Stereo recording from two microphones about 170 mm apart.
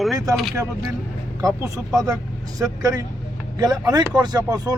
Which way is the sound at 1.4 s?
20° right (ahead or behind).